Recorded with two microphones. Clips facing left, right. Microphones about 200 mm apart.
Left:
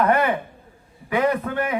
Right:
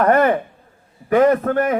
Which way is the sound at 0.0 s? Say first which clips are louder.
Right 5 dB; 45° right (ahead or behind).